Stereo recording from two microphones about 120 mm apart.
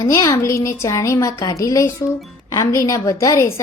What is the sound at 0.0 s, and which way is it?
A woman's voice, 25° left (ahead or behind).